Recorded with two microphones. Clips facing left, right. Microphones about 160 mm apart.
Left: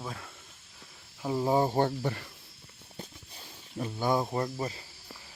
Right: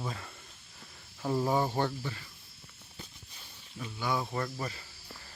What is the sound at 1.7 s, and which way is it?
Speech, 50° left (ahead or behind).